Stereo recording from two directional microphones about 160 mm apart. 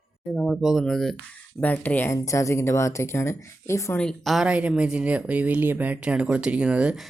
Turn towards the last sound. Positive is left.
turn(degrees=-5)  # may be behind; listen again after turning